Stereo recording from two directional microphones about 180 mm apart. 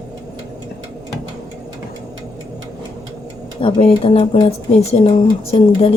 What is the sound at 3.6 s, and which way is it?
Speech, 30° left (ahead or behind).